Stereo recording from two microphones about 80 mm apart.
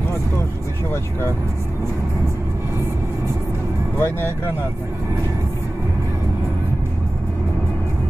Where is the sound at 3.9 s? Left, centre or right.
Left.